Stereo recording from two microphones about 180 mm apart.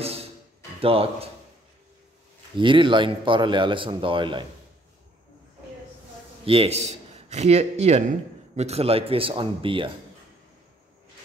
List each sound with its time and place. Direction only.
0.7 s speech: 30° right (ahead or behind)
2.5 s speech: 25° right (ahead or behind)
6.4 s a man's voice: 30° right (ahead or behind)